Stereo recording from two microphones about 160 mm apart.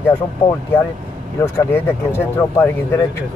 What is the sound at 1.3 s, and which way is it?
Speech, 15° left (ahead or behind).